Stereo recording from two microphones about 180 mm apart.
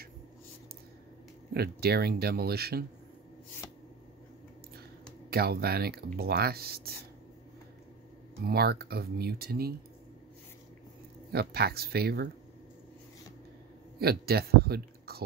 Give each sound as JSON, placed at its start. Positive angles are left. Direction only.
{"t": 1.5, "sound": "speech", "side_deg": -60}
{"t": 5.3, "sound": "speech", "side_deg": -60}
{"t": 8.4, "sound": "speech", "side_deg": -60}
{"t": 11.3, "sound": "speech", "side_deg": -60}
{"t": 13.9, "sound": "speech", "side_deg": -60}